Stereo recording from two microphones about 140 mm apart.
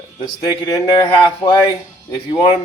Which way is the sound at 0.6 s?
30° left (ahead or behind).